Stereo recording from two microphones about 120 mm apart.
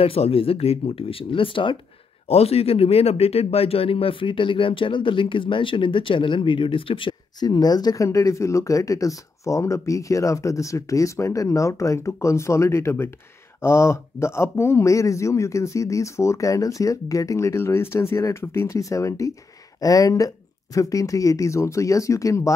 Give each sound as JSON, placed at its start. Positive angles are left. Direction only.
{"t": 0.0, "sound": "speech", "side_deg": 55}
{"t": 2.2, "sound": "speech", "side_deg": 60}